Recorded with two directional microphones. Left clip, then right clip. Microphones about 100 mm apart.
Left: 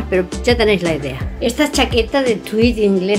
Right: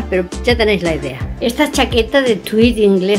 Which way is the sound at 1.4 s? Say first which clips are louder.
Right 1 dB; 10° right (ahead or behind).